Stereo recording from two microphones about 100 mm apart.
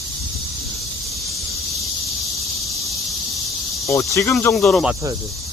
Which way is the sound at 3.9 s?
30° left (ahead or behind).